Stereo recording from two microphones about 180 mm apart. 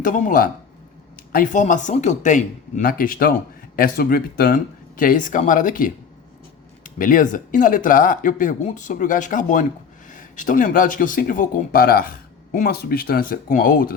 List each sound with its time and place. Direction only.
0.0 s speech: 45° left (ahead or behind)